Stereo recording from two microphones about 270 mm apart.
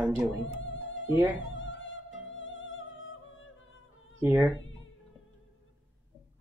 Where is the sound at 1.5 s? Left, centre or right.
Left.